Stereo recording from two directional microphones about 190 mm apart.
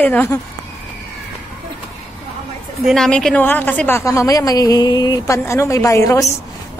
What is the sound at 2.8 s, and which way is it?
A woman's voice, 5° left (ahead or behind).